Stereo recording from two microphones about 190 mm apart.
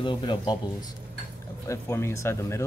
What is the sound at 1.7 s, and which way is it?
Speech, 15° left (ahead or behind).